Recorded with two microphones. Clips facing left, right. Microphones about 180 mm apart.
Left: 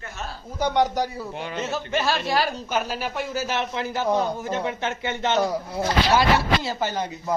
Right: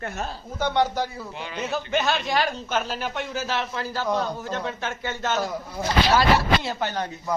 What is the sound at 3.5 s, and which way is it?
A man's voice, 20° left (ahead or behind).